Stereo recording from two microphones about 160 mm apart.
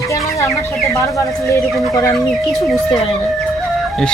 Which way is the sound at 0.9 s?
20° left (ahead or behind).